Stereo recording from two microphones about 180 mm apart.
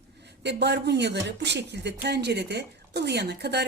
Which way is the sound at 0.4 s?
70° right (ahead or behind).